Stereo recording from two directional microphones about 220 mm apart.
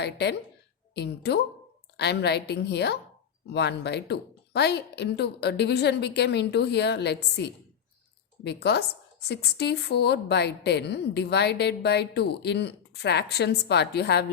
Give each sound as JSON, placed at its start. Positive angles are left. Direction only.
{"t": 0.0, "sound": "a woman's voice", "side_deg": 50}